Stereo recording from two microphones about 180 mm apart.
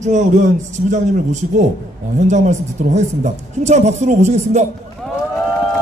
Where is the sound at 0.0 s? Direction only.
40° right (ahead or behind).